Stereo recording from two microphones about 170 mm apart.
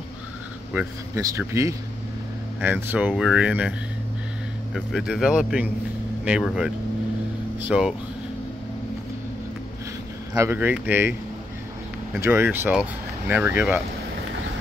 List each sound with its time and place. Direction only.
0.7 s speech: 15° right (ahead or behind)
4.7 s speech: centre (ahead or behind)
10.3 s speech: 15° right (ahead or behind)
12.2 s speech: 15° right (ahead or behind)